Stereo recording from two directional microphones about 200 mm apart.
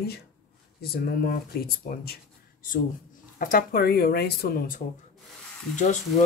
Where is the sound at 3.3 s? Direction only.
45° left (ahead or behind).